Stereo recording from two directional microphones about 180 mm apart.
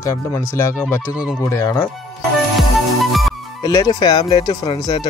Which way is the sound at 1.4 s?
15° left (ahead or behind).